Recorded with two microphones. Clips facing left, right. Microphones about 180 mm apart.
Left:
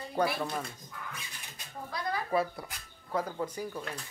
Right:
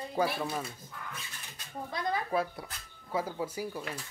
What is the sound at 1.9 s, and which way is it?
Speech, 25° right (ahead or behind).